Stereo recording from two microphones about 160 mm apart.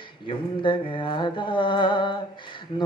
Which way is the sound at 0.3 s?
30° left (ahead or behind).